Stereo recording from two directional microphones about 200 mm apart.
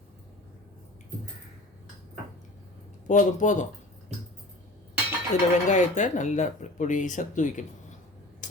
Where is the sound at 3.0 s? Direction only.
40° left (ahead or behind).